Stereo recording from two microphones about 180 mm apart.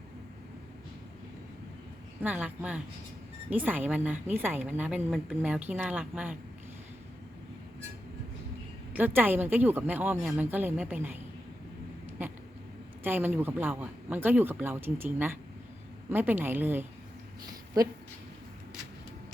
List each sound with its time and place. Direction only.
2.2 s speech: 10° right (ahead or behind)
8.9 s speech: 10° right (ahead or behind)
13.0 s speech: 10° right (ahead or behind)